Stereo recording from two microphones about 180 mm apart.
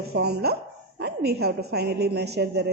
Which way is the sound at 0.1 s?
65° right (ahead or behind).